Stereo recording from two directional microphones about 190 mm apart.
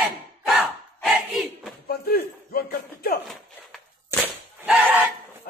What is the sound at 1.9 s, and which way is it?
A man's voice, 55° left (ahead or behind).